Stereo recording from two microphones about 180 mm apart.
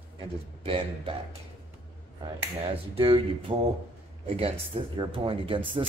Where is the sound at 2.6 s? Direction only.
30° right (ahead or behind).